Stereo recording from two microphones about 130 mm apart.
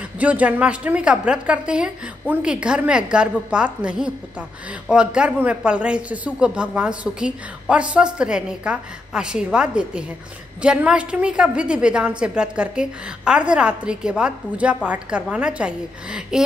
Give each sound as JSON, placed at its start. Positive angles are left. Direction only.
{"t": 0.2, "sound": "a woman's voice", "side_deg": -10}